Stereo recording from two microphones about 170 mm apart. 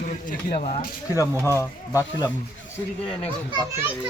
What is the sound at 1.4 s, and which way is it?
Speech, 15° left (ahead or behind).